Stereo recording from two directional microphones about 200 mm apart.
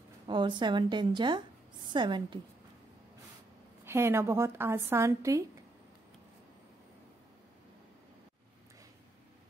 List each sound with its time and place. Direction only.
0.3 s a woman's voice: 25° right (ahead or behind)
3.8 s speech: 10° right (ahead or behind)